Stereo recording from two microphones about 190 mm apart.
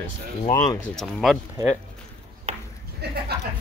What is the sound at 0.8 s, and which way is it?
Speech, centre (ahead or behind).